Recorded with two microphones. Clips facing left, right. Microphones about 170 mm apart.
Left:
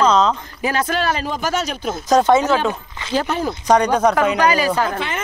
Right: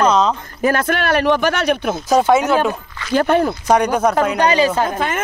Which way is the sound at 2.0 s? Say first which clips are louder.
Even; 5° right (ahead or behind).